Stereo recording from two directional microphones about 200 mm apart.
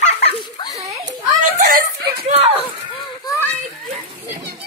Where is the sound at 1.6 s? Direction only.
50° right (ahead or behind).